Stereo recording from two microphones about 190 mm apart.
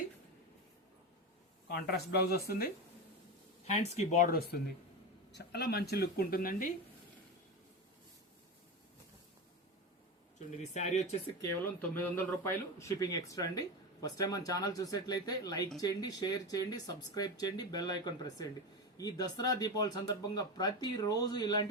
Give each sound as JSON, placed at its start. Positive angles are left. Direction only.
{"t": 1.6, "sound": "speech", "side_deg": 60}
{"t": 3.8, "sound": "speech", "side_deg": 35}
{"t": 10.6, "sound": "speech", "side_deg": 35}
{"t": 11.3, "sound": "speech", "side_deg": 10}